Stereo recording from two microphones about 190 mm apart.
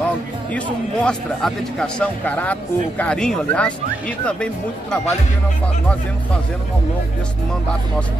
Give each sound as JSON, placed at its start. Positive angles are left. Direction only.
{"t": 0.5, "sound": "speech", "side_deg": 5}